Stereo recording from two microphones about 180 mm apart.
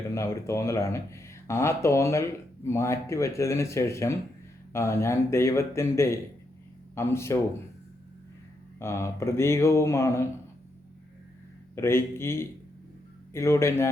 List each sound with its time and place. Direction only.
0.1 s speech: 15° left (ahead or behind)
8.8 s speech: 15° left (ahead or behind)
11.7 s speech: 15° left (ahead or behind)